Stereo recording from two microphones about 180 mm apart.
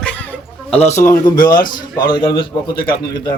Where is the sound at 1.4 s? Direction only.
50° left (ahead or behind).